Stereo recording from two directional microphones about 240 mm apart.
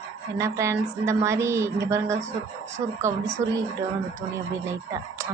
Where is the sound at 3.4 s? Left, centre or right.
Centre.